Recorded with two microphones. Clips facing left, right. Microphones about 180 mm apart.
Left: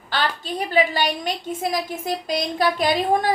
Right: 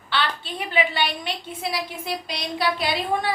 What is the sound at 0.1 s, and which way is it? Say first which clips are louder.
A woman's voice: left 2 dB; 40° left (ahead or behind).